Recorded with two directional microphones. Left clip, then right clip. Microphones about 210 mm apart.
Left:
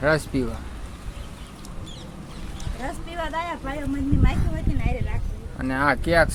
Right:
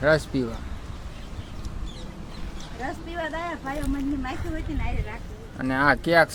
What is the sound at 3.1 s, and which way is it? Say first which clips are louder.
Speech: left 3 dB; 50° left (ahead or behind).